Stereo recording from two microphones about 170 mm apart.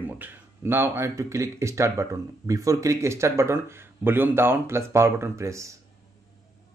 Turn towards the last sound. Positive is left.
turn(degrees=-15)  # may be behind; listen again after turning